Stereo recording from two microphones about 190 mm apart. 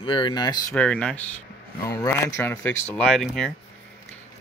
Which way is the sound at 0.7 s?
5° left (ahead or behind).